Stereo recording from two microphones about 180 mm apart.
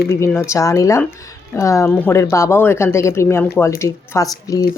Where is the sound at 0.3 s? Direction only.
15° left (ahead or behind).